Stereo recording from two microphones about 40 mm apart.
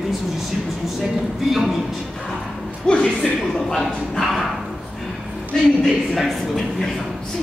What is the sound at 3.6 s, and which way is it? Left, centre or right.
Speech, centre.